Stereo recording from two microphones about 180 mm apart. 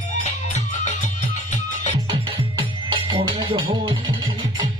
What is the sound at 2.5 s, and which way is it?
Music, 25° right (ahead or behind).